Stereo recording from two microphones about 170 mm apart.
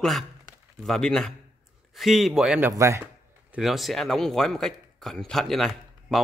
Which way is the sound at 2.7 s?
15° right (ahead or behind).